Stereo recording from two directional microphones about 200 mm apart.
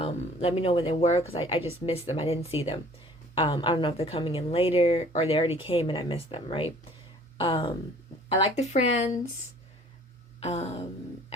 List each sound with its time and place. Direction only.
0.0 s a woman's voice: 30° left (ahead or behind)
10.4 s speech: 30° left (ahead or behind)